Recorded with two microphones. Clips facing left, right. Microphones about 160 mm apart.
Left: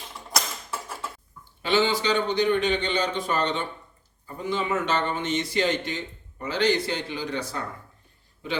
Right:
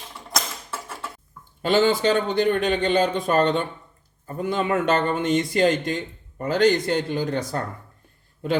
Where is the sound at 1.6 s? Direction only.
50° right (ahead or behind).